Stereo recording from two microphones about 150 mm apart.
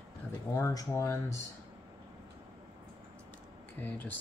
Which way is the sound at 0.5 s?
20° left (ahead or behind).